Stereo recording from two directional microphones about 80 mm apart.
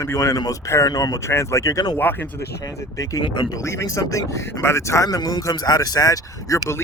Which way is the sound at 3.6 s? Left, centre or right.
Left.